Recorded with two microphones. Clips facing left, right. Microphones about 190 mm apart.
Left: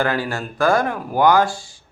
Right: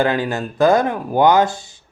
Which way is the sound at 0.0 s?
20° right (ahead or behind).